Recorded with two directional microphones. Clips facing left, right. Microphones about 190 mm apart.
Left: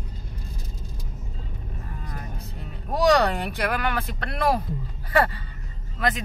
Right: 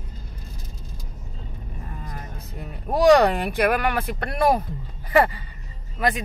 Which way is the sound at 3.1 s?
15° right (ahead or behind).